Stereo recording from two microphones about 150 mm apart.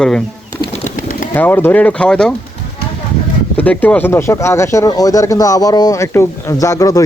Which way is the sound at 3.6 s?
10° left (ahead or behind).